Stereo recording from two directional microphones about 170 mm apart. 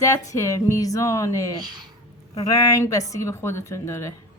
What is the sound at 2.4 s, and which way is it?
A woman's voice, 20° left (ahead or behind).